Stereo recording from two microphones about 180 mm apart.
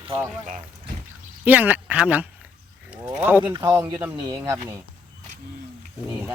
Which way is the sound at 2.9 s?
10° right (ahead or behind).